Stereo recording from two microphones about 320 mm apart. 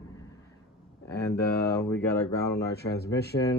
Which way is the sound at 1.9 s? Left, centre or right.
Centre.